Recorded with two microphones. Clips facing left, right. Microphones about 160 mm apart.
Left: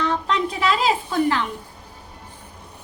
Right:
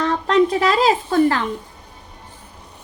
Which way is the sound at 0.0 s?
45° right (ahead or behind).